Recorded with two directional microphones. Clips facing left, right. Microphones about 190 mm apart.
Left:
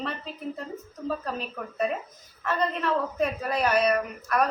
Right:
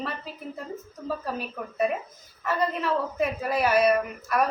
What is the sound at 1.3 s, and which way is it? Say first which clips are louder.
A woman's voice: right 1 dB; 5° right (ahead or behind).